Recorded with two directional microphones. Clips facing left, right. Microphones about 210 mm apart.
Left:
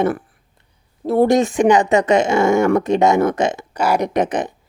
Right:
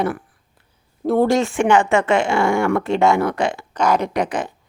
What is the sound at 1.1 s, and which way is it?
Speech, 20° left (ahead or behind).